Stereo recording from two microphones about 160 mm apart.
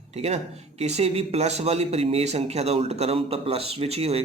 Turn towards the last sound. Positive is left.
turn(degrees=-40)  # may be behind; listen again after turning